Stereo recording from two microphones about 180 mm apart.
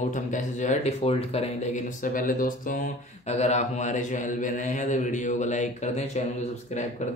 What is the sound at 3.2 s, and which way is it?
A man's voice, 35° left (ahead or behind).